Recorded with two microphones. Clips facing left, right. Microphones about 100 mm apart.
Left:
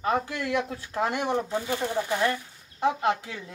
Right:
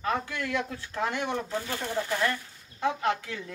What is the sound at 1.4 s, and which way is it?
Speech, 10° left (ahead or behind).